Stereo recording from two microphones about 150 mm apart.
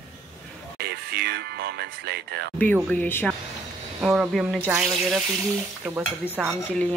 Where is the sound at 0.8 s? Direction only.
90° right.